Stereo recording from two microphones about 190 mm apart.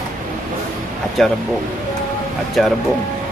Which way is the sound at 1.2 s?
Centre (ahead or behind).